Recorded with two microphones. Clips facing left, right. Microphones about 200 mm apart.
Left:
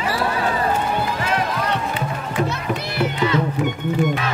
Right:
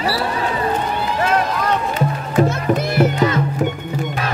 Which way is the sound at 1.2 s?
40° right (ahead or behind).